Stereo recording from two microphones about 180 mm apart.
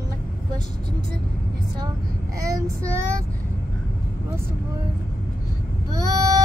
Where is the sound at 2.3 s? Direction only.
20° right (ahead or behind).